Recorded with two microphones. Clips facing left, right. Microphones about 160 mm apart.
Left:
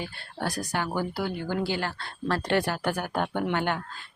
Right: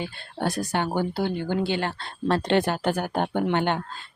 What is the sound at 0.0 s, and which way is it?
Speech, 25° right (ahead or behind).